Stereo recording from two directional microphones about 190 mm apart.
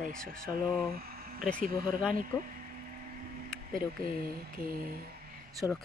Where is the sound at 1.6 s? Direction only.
50° right (ahead or behind).